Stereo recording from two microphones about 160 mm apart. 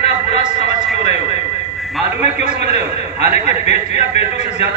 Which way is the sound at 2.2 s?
40° left (ahead or behind).